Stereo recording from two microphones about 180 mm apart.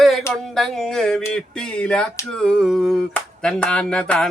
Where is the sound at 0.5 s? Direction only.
Centre (ahead or behind).